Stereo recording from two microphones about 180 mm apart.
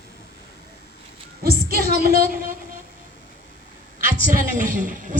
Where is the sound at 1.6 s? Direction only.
55° right (ahead or behind).